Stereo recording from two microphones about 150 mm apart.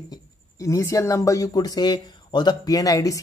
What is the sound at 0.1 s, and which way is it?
Speech, 20° left (ahead or behind).